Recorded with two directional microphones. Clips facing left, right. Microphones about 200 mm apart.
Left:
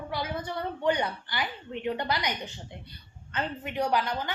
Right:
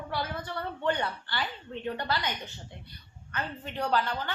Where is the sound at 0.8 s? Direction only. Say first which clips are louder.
Left 3 dB; 15° left (ahead or behind).